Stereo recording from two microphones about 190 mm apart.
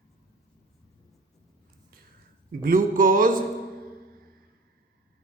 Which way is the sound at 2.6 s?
45° right (ahead or behind).